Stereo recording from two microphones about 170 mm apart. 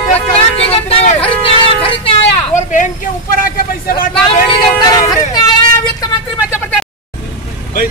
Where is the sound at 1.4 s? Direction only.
30° left (ahead or behind).